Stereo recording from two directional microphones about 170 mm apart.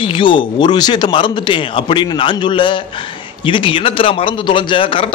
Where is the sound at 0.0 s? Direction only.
30° left (ahead or behind).